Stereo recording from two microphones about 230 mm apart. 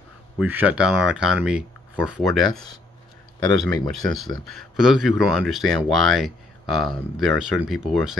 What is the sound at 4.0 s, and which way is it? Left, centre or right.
Speech, centre.